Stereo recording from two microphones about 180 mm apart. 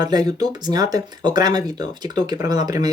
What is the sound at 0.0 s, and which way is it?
Speech, 20° right (ahead or behind).